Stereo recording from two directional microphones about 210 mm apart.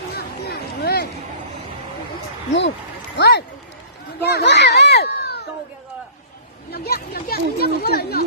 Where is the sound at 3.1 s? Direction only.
50° left (ahead or behind).